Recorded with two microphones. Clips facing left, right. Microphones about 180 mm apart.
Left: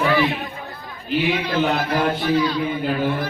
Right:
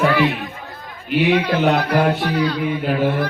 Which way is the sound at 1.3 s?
70° right (ahead or behind).